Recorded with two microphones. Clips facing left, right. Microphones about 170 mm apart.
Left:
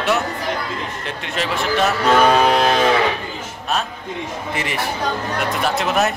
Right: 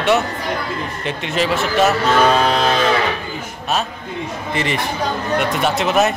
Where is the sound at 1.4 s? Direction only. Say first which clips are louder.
Right 3 dB; 5° right (ahead or behind).